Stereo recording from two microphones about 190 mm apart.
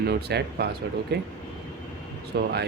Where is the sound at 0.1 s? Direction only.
60° right (ahead or behind).